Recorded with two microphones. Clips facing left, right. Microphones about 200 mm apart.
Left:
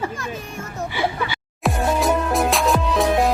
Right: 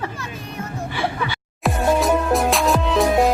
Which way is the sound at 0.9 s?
5° left (ahead or behind).